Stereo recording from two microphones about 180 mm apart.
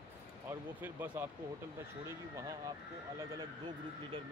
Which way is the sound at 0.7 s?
10° right (ahead or behind).